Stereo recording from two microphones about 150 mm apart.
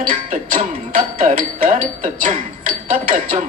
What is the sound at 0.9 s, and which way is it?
Music, 60° right (ahead or behind).